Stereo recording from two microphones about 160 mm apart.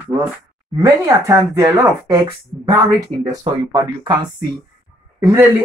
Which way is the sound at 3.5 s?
30° right (ahead or behind).